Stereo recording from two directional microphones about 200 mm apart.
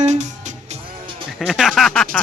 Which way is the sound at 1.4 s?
Centre (ahead or behind).